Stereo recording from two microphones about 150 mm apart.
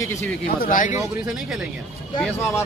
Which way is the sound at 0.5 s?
65° left (ahead or behind).